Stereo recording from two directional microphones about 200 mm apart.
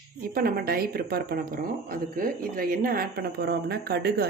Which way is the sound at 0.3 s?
50° right (ahead or behind).